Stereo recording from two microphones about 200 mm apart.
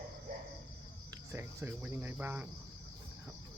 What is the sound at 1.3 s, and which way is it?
Cricket, 10° right (ahead or behind).